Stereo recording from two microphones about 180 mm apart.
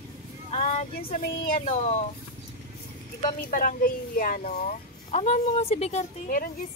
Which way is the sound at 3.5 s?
50° left (ahead or behind).